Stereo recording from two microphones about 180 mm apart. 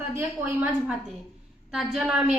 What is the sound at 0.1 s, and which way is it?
Speech, 15° right (ahead or behind).